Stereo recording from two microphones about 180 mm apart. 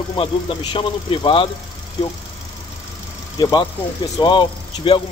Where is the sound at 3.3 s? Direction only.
20° left (ahead or behind).